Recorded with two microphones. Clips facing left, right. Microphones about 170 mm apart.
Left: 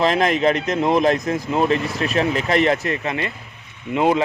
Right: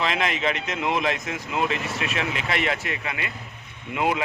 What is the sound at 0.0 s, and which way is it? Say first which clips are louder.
Speech: left 8 dB; 40° left (ahead or behind).